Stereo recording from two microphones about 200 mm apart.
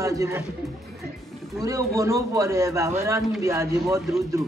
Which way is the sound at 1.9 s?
15° right (ahead or behind).